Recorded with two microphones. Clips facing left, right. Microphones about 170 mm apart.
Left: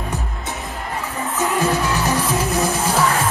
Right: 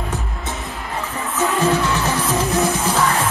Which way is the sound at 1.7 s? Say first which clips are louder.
Right 1 dB; 35° left (ahead or behind).